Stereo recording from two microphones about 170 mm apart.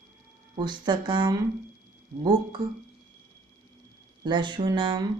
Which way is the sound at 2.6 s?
25° right (ahead or behind).